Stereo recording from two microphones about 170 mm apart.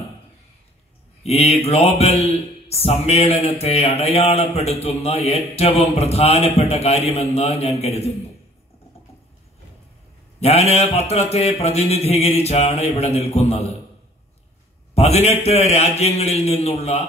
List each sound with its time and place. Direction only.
1.2 s speech: 35° left (ahead or behind)
10.4 s speech: 35° left (ahead or behind)
15.0 s speech: 40° left (ahead or behind)